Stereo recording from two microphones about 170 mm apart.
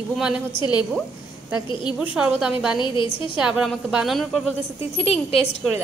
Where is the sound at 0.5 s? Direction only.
25° left (ahead or behind).